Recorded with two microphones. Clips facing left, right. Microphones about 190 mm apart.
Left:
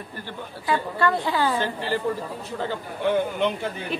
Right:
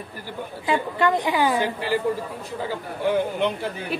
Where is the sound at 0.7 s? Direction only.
20° right (ahead or behind).